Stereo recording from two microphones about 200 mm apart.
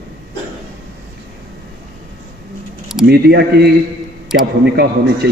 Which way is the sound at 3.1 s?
55° right (ahead or behind).